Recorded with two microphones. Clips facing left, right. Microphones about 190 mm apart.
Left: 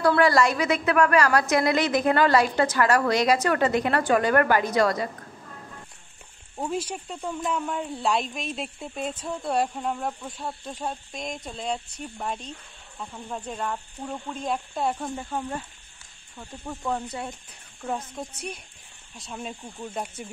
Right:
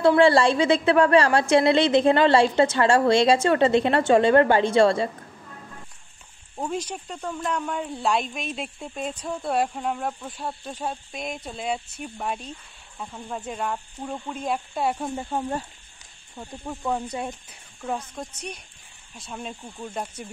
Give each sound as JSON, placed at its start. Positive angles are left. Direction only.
{"t": 0.0, "sound": "a woman's voice", "side_deg": -25}
{"t": 6.5, "sound": "speech", "side_deg": 5}
{"t": 15.1, "sound": "a woman's voice", "side_deg": -30}
{"t": 16.6, "sound": "speech", "side_deg": -10}
{"t": 17.8, "sound": "speech", "side_deg": 5}